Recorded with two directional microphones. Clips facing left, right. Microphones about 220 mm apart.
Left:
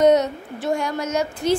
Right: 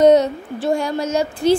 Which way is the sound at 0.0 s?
30° right (ahead or behind).